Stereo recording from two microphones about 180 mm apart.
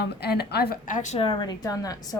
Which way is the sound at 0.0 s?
65° left (ahead or behind).